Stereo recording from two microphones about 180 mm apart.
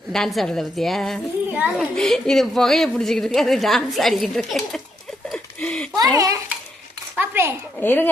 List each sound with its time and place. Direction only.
0.1 s a woman's voice: centre (ahead or behind)
5.3 s a sound: 5° left (ahead or behind)
6.0 s a child's voice: 20° right (ahead or behind)
7.8 s speech: 10° left (ahead or behind)